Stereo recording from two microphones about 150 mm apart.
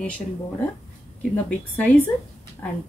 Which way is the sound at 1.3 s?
10° left (ahead or behind).